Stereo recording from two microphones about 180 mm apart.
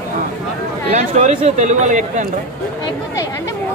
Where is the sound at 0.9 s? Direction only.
40° right (ahead or behind).